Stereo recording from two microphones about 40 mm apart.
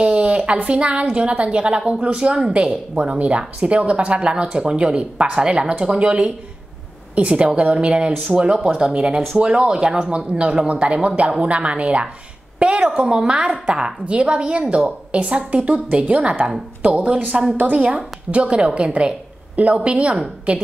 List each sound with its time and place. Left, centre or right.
0.0 s a sound: right
0.7 s a woman's voice: right
13.0 s a woman's voice: centre; by 20.6 s right